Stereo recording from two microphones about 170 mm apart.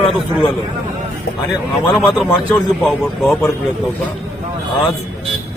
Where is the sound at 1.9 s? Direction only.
Centre (ahead or behind).